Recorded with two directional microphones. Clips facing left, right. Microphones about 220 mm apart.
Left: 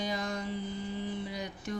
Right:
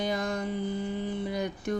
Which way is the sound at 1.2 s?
55° right (ahead or behind).